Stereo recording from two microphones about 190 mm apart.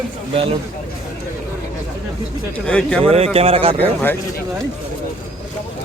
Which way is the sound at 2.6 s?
5° left (ahead or behind).